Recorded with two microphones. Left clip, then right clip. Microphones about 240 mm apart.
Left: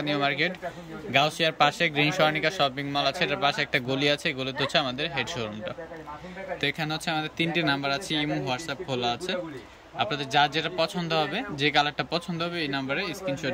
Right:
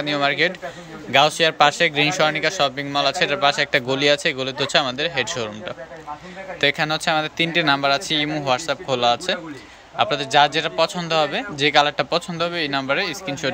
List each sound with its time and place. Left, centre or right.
0.0 s a man's voice: centre
6.6 s a man's voice: centre